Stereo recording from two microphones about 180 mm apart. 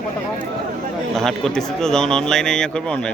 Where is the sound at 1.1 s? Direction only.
Centre (ahead or behind).